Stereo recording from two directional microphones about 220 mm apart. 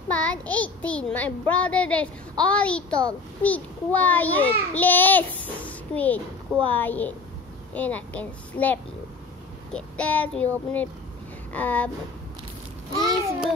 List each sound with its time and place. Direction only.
0.1 s a child's voice: 5° left (ahead or behind)